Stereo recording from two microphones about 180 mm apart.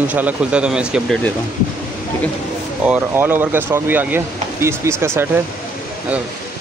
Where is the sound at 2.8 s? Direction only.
10° right (ahead or behind).